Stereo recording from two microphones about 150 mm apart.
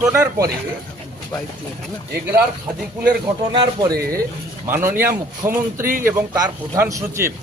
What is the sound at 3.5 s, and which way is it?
Speech, 30° right (ahead or behind).